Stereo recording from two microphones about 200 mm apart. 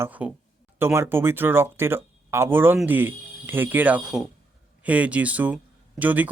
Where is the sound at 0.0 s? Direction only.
5° right (ahead or behind).